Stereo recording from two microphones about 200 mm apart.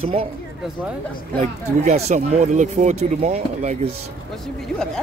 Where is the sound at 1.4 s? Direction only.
35° right (ahead or behind).